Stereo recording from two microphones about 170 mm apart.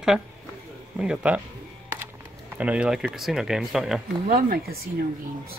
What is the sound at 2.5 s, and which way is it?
Speech, 5° right (ahead or behind).